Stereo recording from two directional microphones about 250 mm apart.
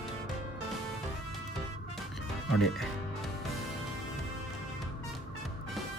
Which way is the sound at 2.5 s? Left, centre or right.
Centre.